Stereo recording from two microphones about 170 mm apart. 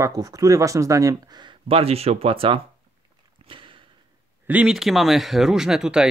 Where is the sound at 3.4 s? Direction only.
30° right (ahead or behind).